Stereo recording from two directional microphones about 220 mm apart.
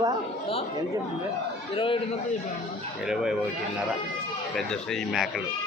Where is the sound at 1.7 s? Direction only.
25° left (ahead or behind).